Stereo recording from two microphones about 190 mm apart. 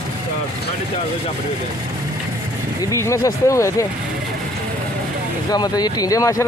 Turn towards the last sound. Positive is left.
turn(degrees=20)  # may be behind; listen again after turning